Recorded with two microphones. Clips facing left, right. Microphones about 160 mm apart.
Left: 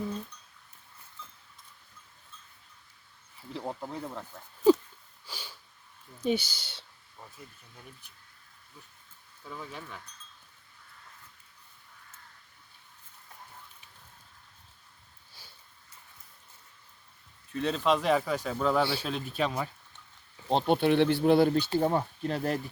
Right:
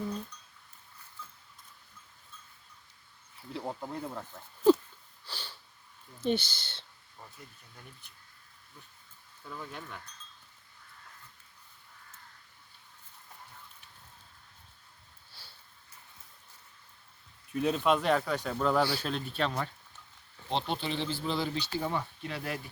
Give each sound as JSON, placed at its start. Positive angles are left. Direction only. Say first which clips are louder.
{"t": 3.5, "sound": "speech", "louder": "left 1 dB", "side_deg": 0}
{"t": 5.2, "sound": "sniff", "louder": "even", "side_deg": 10}
{"t": 6.2, "sound": "speech", "louder": "left 1 dB", "side_deg": 10}
{"t": 9.5, "sound": "speech", "louder": "left 1 dB", "side_deg": 0}
{"t": 17.5, "sound": "speech", "louder": "even", "side_deg": -5}
{"t": 20.5, "sound": "speech", "louder": "left 9 dB", "side_deg": 50}
{"t": 21.7, "sound": "speech", "louder": "left 7 dB", "side_deg": 35}